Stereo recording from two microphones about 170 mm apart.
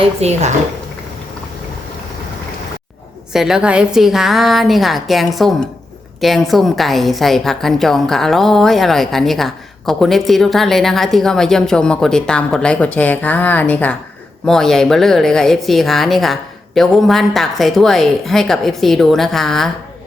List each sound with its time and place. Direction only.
0.2 s speech: 40° right (ahead or behind)
3.3 s a woman's voice: 5° right (ahead or behind)